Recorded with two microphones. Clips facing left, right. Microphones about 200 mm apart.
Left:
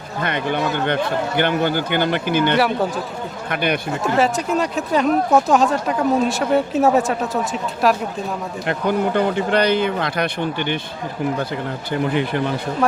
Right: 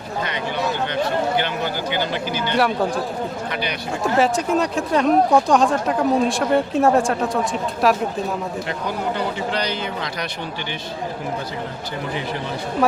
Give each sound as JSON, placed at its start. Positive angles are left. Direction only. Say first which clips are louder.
{"t": 0.2, "sound": "speech", "louder": "left 4 dB", "side_deg": 55}
{"t": 2.6, "sound": "speech", "louder": "left 1 dB", "side_deg": 0}
{"t": 3.5, "sound": "speech", "louder": "left 5 dB", "side_deg": 55}
{"t": 4.0, "sound": "speech", "louder": "right 1 dB", "side_deg": 0}
{"t": 8.6, "sound": "speech", "louder": "left 5 dB", "side_deg": 55}